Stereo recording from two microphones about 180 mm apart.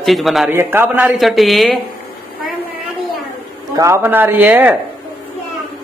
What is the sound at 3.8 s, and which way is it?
Speech, 15° right (ahead or behind).